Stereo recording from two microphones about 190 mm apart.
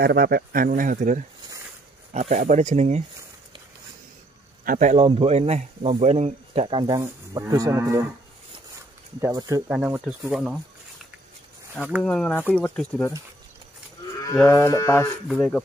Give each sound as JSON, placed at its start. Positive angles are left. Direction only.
{"t": 0.0, "sound": "speech", "side_deg": -55}
{"t": 4.6, "sound": "speech", "side_deg": -40}
{"t": 7.0, "sound": "livestock", "side_deg": -15}
{"t": 9.2, "sound": "speech", "side_deg": -20}
{"t": 12.0, "sound": "speech", "side_deg": 5}
{"t": 14.5, "sound": "speech", "side_deg": 15}
{"t": 15.2, "sound": "speech", "side_deg": 0}